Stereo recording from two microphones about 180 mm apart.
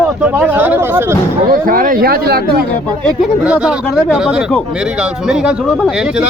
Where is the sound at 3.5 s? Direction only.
5° right (ahead or behind).